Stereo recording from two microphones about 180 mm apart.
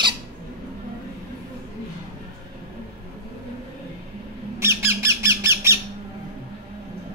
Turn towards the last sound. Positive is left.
turn(degrees=-15)  # may be behind; listen again after turning